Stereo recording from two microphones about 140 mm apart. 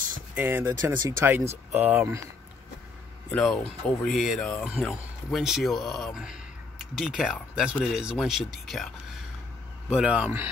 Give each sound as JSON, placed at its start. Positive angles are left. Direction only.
{"t": 0.3, "sound": "speech", "side_deg": -15}
{"t": 3.4, "sound": "speech", "side_deg": 5}